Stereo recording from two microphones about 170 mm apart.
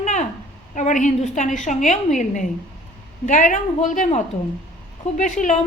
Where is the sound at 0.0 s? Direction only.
45° left (ahead or behind).